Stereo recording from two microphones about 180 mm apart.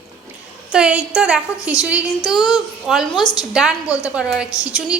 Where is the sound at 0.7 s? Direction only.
5° right (ahead or behind).